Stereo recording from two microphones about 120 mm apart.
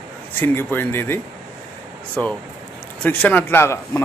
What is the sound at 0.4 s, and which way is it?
Speech, 15° left (ahead or behind).